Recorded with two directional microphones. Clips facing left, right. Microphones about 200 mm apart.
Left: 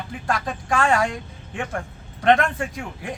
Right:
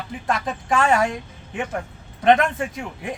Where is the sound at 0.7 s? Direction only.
20° right (ahead or behind).